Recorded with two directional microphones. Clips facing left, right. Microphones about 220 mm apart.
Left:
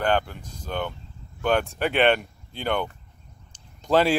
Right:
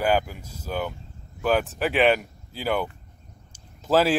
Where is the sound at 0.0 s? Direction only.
5° right (ahead or behind).